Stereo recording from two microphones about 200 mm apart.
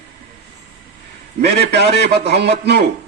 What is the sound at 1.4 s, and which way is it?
A man's voice, 55° right (ahead or behind).